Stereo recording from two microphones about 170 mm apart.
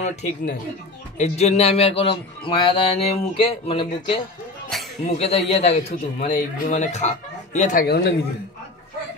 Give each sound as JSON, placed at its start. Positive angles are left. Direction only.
{"t": 0.0, "sound": "a man's voice", "side_deg": 45}
{"t": 4.7, "sound": "a sound", "side_deg": 0}
{"t": 5.0, "sound": "a man's voice", "side_deg": 40}
{"t": 7.8, "sound": "a man's voice", "side_deg": 75}